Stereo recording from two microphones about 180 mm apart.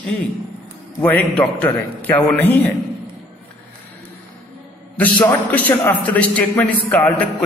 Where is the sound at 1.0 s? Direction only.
10° left (ahead or behind).